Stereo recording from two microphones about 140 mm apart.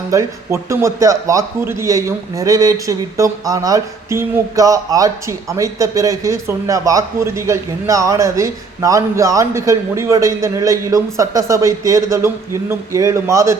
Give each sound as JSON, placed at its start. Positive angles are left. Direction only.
{"t": 0.1, "sound": "a man's voice", "side_deg": -20}